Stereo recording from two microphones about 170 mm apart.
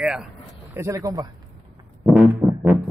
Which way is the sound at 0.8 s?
15° right (ahead or behind).